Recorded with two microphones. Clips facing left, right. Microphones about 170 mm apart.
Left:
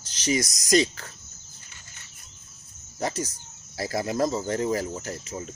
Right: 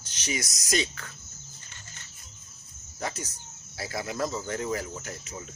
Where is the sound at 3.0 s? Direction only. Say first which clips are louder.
Left 6 dB; 35° left (ahead or behind).